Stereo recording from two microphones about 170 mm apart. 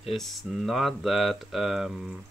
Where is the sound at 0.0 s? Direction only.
Centre (ahead or behind).